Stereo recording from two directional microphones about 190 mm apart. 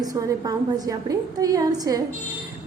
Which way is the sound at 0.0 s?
20° right (ahead or behind).